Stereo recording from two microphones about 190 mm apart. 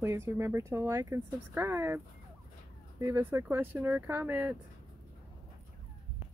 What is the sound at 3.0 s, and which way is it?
Speech, 10° right (ahead or behind).